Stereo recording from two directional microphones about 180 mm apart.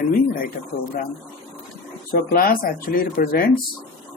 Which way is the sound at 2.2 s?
50° left (ahead or behind).